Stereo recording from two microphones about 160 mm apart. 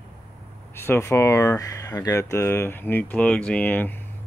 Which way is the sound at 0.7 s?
15° left (ahead or behind).